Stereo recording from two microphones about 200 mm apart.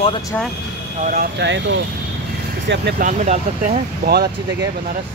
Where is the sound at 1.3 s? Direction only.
60° right (ahead or behind).